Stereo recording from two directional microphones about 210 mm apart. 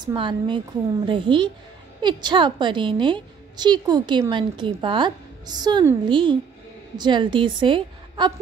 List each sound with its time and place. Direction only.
0.0 s a woman's voice: 20° right (ahead or behind)